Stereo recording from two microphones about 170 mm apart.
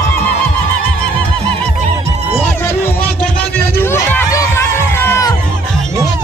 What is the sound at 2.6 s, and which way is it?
Music, 15° left (ahead or behind).